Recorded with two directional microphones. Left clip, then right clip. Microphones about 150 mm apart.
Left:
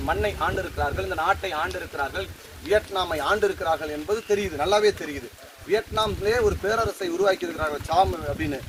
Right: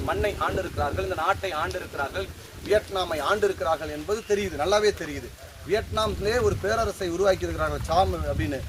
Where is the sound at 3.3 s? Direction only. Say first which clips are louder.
Left 1 dB; 20° right (ahead or behind).